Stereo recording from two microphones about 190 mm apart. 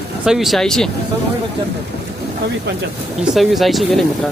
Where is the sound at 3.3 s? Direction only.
Centre (ahead or behind).